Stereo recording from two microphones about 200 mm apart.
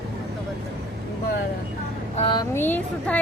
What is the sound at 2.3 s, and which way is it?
Speech, 20° left (ahead or behind).